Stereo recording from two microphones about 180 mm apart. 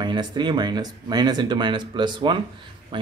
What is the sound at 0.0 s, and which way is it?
A man's voice, 25° right (ahead or behind).